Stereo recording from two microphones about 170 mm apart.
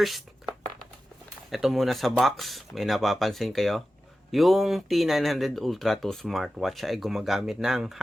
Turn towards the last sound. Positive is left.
turn(degrees=0)  # may be behind; listen again after turning